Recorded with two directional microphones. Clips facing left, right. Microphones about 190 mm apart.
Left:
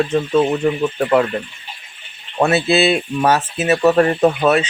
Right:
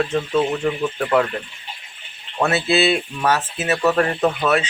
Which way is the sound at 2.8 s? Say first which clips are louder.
Left 3 dB; 40° left (ahead or behind).